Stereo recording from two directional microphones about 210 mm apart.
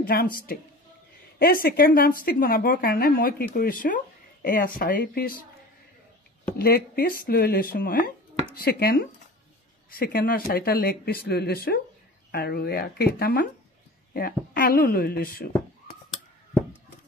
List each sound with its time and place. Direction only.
0.0 s a woman's voice: 45° left (ahead or behind)
6.6 s a woman's voice: 45° left (ahead or behind)